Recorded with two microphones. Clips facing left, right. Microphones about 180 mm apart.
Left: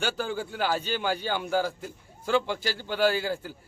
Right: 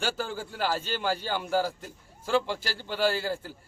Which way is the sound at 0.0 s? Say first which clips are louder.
Left 2 dB; centre (ahead or behind).